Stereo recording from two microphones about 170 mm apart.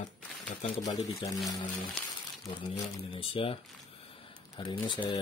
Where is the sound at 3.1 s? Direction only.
30° left (ahead or behind).